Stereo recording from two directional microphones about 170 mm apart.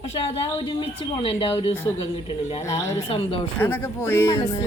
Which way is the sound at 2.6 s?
20° left (ahead or behind).